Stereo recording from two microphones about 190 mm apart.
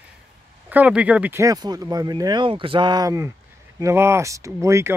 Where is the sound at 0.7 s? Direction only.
10° right (ahead or behind).